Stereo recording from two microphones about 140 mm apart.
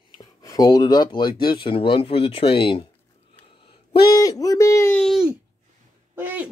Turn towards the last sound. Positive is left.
turn(degrees=-15)  # may be behind; listen again after turning